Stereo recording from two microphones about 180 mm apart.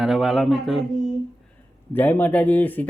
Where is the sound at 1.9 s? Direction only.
10° left (ahead or behind).